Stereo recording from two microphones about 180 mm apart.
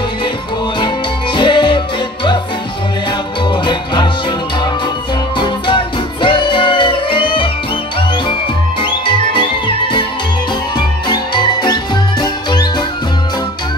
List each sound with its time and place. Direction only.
0.7 s music: 25° left (ahead or behind)
3.4 s music: 25° left (ahead or behind)
5.4 s music: 25° left (ahead or behind)
8.8 s music: 25° left (ahead or behind)